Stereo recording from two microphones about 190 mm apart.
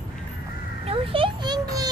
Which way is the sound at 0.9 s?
25° right (ahead or behind).